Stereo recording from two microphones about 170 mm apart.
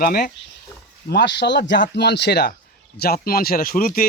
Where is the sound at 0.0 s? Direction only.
60° left (ahead or behind).